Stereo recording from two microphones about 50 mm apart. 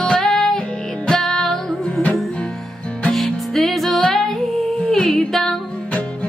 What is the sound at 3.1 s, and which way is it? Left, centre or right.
Music, centre.